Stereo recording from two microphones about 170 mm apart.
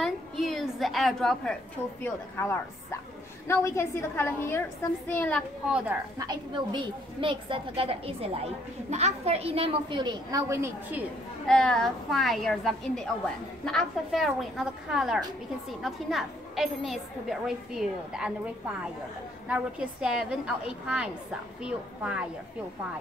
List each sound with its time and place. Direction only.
0.0 s a sound: centre (ahead or behind)
2.0 s a woman's voice: 15° left (ahead or behind)
5.7 s a woman's voice: 5° right (ahead or behind)
6.1 s a woman's voice: 25° right (ahead or behind)
11.4 s a woman's voice: 5° left (ahead or behind)